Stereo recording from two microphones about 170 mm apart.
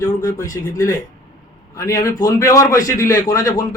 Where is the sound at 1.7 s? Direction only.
20° left (ahead or behind).